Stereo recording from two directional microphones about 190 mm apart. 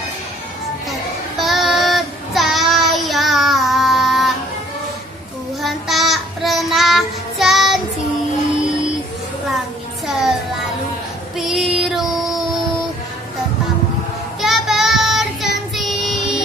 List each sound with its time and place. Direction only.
1.4 s child singing: centre (ahead or behind)
5.6 s child singing: centre (ahead or behind)
10.0 s child singing: centre (ahead or behind)
11.3 s child singing: centre (ahead or behind)
14.4 s child singing: centre (ahead or behind)